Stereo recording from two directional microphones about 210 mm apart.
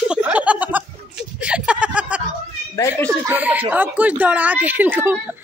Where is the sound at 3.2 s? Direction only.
10° right (ahead or behind).